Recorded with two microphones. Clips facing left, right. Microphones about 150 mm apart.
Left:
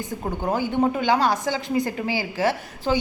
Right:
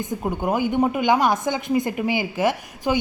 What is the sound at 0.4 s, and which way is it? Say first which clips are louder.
Speech: right 1 dB; 15° right (ahead or behind).